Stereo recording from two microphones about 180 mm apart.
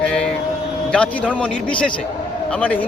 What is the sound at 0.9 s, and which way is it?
Speech, 5° left (ahead or behind).